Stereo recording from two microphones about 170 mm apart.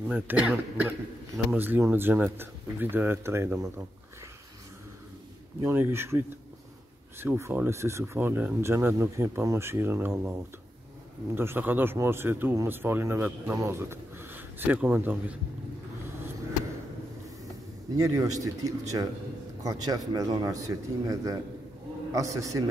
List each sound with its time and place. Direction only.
0.1 s speech: 10° right (ahead or behind)
5.6 s speech: 15° right (ahead or behind)
11.3 s speech: 10° right (ahead or behind)
17.9 s speech: 20° right (ahead or behind)